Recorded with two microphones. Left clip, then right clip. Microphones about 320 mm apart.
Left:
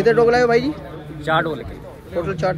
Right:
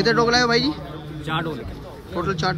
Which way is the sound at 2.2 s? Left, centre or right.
Centre.